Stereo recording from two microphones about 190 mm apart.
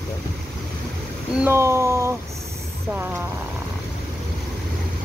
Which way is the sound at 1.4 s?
10° right (ahead or behind).